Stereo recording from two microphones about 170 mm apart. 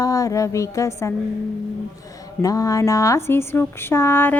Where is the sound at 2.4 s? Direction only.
20° left (ahead or behind).